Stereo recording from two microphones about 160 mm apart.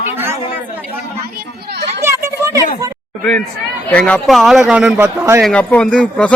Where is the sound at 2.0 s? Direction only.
20° right (ahead or behind).